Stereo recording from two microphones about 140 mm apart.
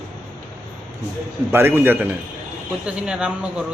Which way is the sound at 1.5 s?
15° right (ahead or behind).